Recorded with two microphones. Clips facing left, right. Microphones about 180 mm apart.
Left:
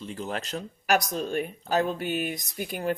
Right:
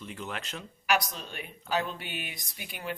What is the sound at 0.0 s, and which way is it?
Speech, 35° left (ahead or behind).